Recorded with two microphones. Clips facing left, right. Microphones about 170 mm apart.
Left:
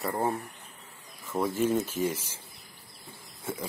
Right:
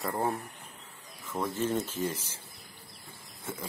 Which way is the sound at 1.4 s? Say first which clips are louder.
Left 4 dB; 10° left (ahead or behind).